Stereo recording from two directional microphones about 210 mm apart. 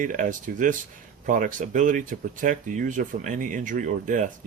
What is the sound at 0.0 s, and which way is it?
Speech, 40° right (ahead or behind).